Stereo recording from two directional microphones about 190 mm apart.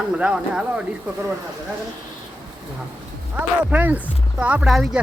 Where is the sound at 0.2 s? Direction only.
5° right (ahead or behind).